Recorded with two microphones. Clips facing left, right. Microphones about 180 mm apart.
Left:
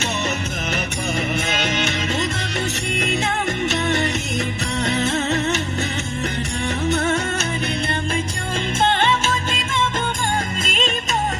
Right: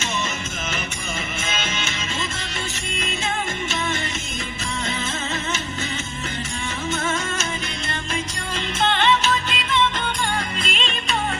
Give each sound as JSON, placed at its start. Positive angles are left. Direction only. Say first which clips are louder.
{"t": 1.5, "sound": "music", "louder": "left 6 dB", "side_deg": 65}
{"t": 2.9, "sound": "music", "louder": "left 3 dB", "side_deg": 65}
{"t": 6.8, "sound": "music", "louder": "left 5 dB", "side_deg": 65}
{"t": 8.8, "sound": "music", "louder": "even", "side_deg": 50}